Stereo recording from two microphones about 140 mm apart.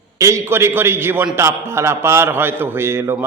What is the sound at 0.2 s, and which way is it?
A man's voice, 20° right (ahead or behind).